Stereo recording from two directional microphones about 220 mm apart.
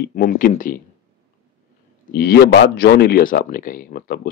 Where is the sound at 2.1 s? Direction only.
45° left (ahead or behind).